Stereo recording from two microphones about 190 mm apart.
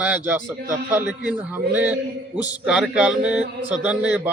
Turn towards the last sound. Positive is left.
turn(degrees=-10)  # may be behind; listen again after turning